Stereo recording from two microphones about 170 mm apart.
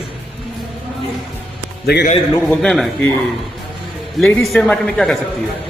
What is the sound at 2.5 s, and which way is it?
Speech, 5° left (ahead or behind).